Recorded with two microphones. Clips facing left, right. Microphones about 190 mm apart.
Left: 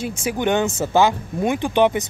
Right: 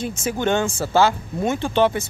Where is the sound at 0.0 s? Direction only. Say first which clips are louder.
Left 1 dB; 10° left (ahead or behind).